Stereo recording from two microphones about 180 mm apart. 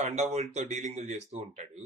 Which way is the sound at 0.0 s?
40° right (ahead or behind).